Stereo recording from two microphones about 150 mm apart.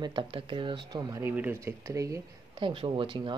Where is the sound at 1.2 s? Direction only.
15° right (ahead or behind).